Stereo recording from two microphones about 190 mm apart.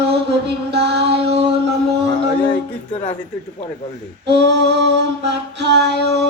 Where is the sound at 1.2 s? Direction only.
30° right (ahead or behind).